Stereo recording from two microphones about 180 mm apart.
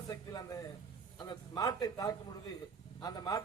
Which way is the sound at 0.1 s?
20° left (ahead or behind).